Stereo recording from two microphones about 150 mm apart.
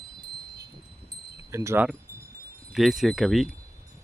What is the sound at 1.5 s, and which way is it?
Wind chime, 20° right (ahead or behind).